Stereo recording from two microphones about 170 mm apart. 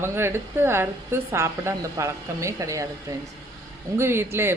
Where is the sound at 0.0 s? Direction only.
15° right (ahead or behind).